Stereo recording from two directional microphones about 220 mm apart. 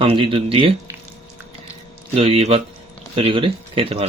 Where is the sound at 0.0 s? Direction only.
25° right (ahead or behind).